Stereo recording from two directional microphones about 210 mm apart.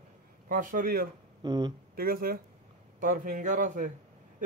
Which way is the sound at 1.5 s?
20° right (ahead or behind).